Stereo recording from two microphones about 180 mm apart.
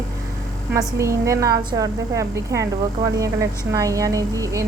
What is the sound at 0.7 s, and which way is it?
A woman's voice, 15° right (ahead or behind).